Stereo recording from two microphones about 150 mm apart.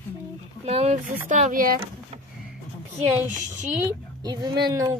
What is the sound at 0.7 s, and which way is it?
Speech, 45° right (ahead or behind).